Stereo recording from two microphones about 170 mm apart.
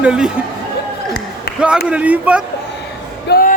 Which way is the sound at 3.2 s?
60° left (ahead or behind).